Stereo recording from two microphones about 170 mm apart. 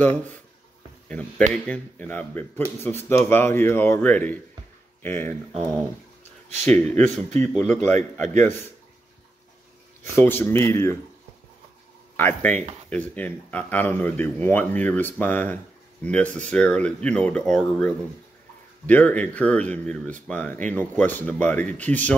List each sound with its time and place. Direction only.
1.5 s speech: 10° left (ahead or behind)
5.5 s speech: centre (ahead or behind)
6.8 s speech: 10° left (ahead or behind)
10.1 s speech: 15° left (ahead or behind)
12.2 s speech: 10° left (ahead or behind)